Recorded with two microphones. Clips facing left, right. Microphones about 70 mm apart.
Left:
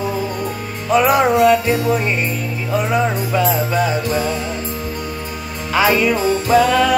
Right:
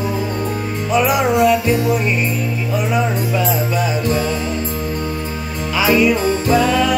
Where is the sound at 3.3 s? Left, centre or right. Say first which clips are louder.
Left 1 dB; left.